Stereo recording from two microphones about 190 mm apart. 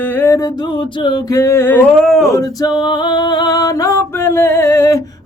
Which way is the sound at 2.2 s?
15° left (ahead or behind).